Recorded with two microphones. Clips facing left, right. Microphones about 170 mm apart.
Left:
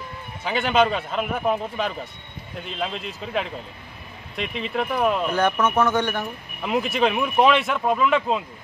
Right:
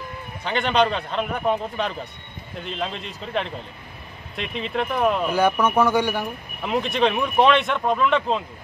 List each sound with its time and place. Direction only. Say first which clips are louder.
0.4 s speech: even; 5° left (ahead or behind)
5.3 s speech: right 1 dB; 10° right (ahead or behind)
6.6 s speech: even; centre (ahead or behind)